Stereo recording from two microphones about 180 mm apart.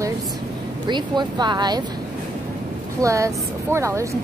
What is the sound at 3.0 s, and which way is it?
Speech, 15° right (ahead or behind).